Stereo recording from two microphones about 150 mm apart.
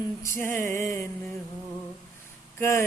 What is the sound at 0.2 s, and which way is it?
Mantra, 20° left (ahead or behind).